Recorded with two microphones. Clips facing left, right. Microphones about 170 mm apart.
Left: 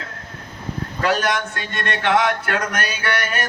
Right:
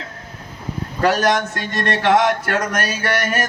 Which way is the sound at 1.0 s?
40° right (ahead or behind).